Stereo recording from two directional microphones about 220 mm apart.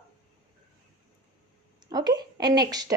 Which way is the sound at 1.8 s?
20° right (ahead or behind).